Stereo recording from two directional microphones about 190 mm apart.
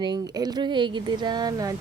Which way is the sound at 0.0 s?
20° right (ahead or behind).